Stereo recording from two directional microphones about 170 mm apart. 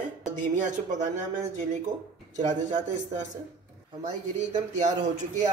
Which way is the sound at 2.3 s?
45° right (ahead or behind).